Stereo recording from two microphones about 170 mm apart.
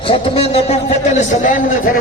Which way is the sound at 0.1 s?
35° left (ahead or behind).